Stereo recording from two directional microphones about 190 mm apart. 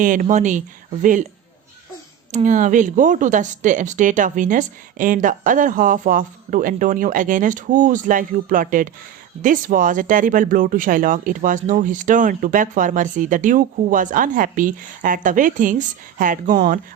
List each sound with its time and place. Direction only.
0.0 s speech: 45° right (ahead or behind)
2.3 s speech: 40° right (ahead or behind)